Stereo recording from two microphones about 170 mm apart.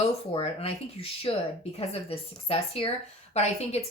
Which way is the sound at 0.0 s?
35° left (ahead or behind).